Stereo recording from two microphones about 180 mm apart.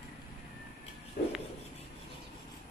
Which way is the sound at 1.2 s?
45° left (ahead or behind).